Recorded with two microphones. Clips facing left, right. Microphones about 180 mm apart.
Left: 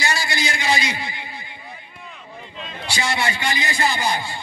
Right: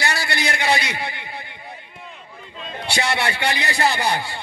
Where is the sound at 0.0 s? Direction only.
60° right (ahead or behind).